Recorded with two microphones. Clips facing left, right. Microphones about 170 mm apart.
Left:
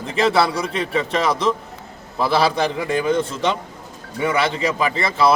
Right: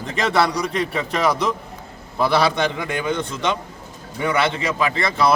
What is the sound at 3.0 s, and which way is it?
Speech, 35° left (ahead or behind).